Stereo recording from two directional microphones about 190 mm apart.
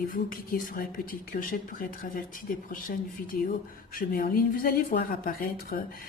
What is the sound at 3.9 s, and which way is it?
Speech, 50° left (ahead or behind).